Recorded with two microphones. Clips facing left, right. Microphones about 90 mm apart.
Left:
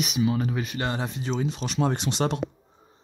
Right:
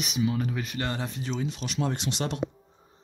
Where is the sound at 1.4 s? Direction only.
35° left (ahead or behind).